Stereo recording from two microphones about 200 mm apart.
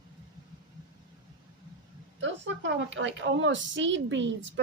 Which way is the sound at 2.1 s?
70° right (ahead or behind).